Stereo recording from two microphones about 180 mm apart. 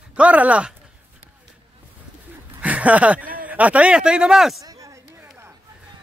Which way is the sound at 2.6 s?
10° right (ahead or behind).